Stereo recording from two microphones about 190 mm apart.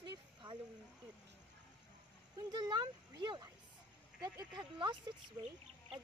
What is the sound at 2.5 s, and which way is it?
Speech, 20° right (ahead or behind).